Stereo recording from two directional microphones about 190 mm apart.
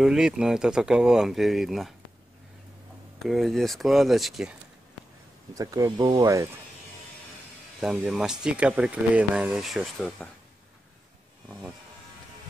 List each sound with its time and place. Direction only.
0.0 s speech: 5° right (ahead or behind)
3.2 s speech: centre (ahead or behind)
5.5 s speech: 20° right (ahead or behind)
7.8 s speech: 5° right (ahead or behind)